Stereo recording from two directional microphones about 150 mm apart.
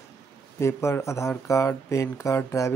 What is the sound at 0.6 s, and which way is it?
Speech, 15° left (ahead or behind).